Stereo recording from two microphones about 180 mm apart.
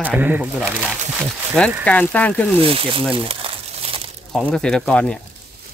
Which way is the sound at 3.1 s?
30° right (ahead or behind).